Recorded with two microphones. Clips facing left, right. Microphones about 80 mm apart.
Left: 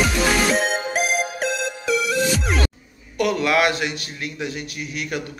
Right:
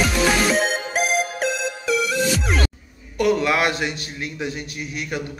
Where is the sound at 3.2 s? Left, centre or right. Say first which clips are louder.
Even; right.